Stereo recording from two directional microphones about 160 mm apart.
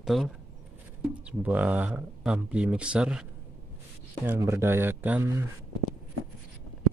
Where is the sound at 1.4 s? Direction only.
10° right (ahead or behind).